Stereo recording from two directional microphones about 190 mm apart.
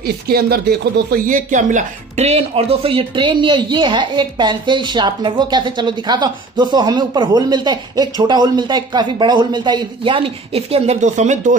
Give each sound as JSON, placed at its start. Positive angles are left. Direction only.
{"t": 0.0, "sound": "speech", "side_deg": -55}